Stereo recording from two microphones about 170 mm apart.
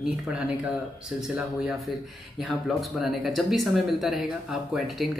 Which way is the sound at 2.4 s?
Centre (ahead or behind).